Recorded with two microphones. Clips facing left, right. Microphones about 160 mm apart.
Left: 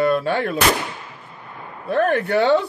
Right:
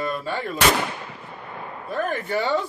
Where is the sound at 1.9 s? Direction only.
70° left (ahead or behind).